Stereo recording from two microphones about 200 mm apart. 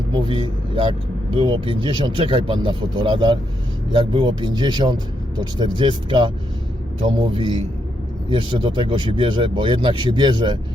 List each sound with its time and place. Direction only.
0.1 s speech: 25° right (ahead or behind)